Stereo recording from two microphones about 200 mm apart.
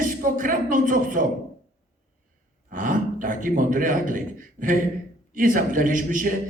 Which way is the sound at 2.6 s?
40° right (ahead or behind).